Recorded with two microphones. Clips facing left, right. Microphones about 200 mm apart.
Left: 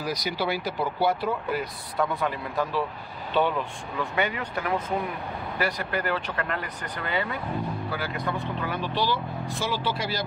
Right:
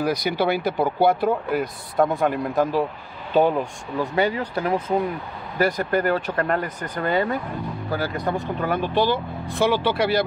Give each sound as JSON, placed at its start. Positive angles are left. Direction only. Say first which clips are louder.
{"t": 0.0, "sound": "speech", "louder": "right 7 dB", "side_deg": -55}
{"t": 5.6, "sound": "speech", "louder": "right 8 dB", "side_deg": -45}